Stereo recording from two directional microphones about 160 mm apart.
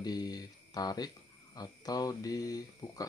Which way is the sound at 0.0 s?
25° left (ahead or behind).